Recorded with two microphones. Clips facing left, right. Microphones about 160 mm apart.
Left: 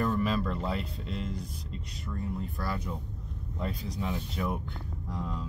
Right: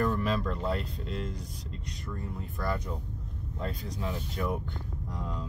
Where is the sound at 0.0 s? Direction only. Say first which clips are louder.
Even; 5° left (ahead or behind).